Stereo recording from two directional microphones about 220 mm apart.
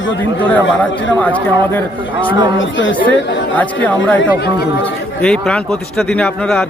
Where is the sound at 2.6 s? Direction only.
60° left (ahead or behind).